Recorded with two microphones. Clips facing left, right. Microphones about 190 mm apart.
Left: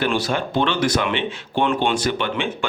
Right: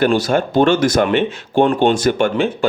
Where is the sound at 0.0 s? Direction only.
45° right (ahead or behind).